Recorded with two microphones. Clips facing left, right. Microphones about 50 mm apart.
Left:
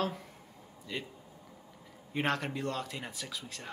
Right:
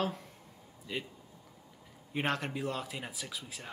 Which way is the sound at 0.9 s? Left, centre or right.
Centre.